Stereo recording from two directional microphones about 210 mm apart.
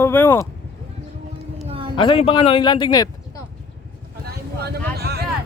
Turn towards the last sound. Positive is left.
turn(degrees=-50)  # may be behind; listen again after turning